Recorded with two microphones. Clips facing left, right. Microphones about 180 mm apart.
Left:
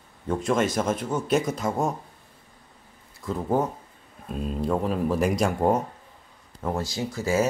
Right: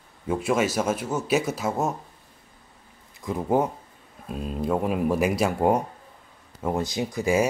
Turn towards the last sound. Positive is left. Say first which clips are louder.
# right 2 dB
turn(degrees=-15)  # may be behind; listen again after turning